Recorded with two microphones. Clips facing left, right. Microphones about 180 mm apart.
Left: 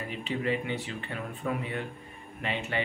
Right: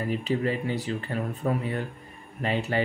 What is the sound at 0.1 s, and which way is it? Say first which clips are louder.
Speech: right 3 dB; 40° right (ahead or behind).